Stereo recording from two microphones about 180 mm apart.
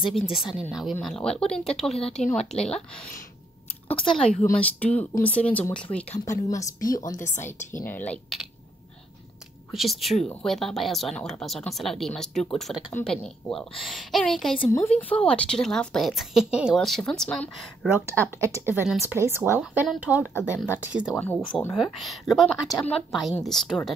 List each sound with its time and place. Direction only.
0.1 s a woman's voice: centre (ahead or behind)
1.9 s speech: 35° left (ahead or behind)
2.5 s a woman's voice: 5° left (ahead or behind)
3.9 s a woman's voice: 30° left (ahead or behind)
4.6 s a woman's voice: 5° left (ahead or behind)
6.0 s speech: 40° left (ahead or behind)
6.5 s a woman's voice: 20° left (ahead or behind)
9.7 s a woman's voice: centre (ahead or behind)
18.0 s speech: 15° right (ahead or behind)
21.2 s a woman's voice: 5° left (ahead or behind)